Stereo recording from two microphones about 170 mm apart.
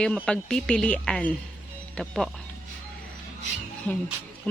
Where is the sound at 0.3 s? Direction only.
5° left (ahead or behind).